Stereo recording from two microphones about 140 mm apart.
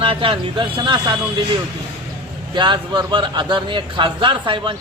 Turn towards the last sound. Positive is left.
turn(degrees=-35)  # may be behind; listen again after turning